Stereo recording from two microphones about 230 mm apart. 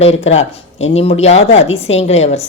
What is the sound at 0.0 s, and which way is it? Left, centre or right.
A woman's voice, left.